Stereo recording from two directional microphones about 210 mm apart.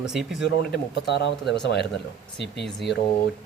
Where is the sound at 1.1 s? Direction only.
55° left (ahead or behind).